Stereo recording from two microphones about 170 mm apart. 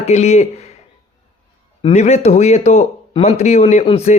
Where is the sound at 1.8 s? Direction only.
40° left (ahead or behind).